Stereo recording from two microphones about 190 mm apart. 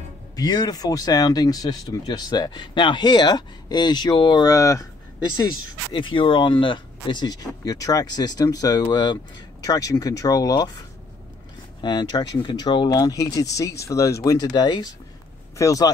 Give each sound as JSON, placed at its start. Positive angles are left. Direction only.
{"t": 0.4, "sound": "speech", "side_deg": 20}
{"t": 5.9, "sound": "speech", "side_deg": 25}
{"t": 11.8, "sound": "speech", "side_deg": 25}